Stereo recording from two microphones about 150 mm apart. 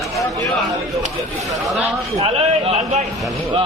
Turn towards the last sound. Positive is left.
turn(degrees=-50)  # may be behind; listen again after turning